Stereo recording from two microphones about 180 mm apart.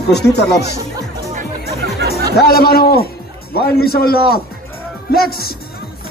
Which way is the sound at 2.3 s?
60° left (ahead or behind).